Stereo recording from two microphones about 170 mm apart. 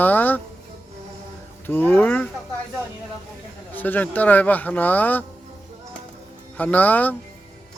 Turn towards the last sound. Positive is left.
turn(degrees=10)  # may be behind; listen again after turning